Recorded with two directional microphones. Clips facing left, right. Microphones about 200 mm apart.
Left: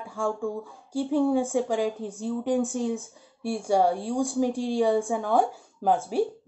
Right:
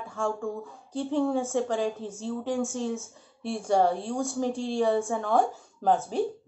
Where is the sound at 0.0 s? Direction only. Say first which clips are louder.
Left 2 dB; 10° left (ahead or behind).